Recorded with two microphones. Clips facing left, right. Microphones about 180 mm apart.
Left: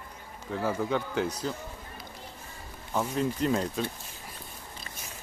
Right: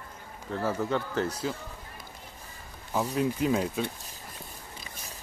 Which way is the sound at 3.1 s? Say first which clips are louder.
Right 1 dB; 5° right (ahead or behind).